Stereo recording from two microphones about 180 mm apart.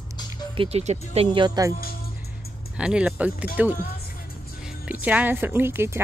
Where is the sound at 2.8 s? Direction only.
5° right (ahead or behind).